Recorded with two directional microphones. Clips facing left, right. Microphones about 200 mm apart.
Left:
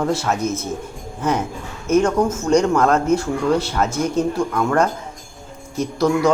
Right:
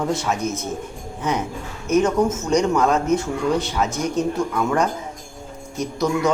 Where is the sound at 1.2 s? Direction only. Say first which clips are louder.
Left 3 dB; centre (ahead or behind).